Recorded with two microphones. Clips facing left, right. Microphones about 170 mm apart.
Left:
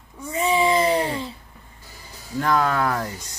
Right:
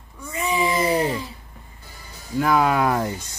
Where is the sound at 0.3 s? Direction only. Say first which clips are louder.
Left 3 dB; 30° left (ahead or behind).